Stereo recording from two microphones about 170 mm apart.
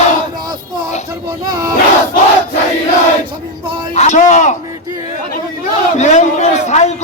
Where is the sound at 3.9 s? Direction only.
45° left (ahead or behind).